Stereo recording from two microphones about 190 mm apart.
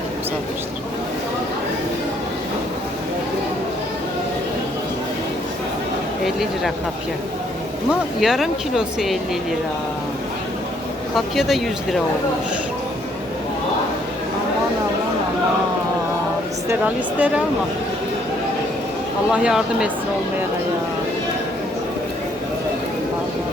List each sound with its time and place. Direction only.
6.2 s speech: centre (ahead or behind)
7.9 s speech: centre (ahead or behind)
11.1 s speech: centre (ahead or behind)
16.6 s speech: 10° right (ahead or behind)
19.3 s speech: 5° right (ahead or behind)